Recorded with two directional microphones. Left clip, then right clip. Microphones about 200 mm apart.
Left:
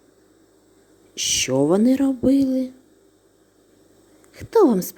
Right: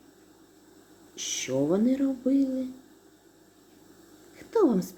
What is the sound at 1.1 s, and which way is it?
A woman's voice, 35° left (ahead or behind).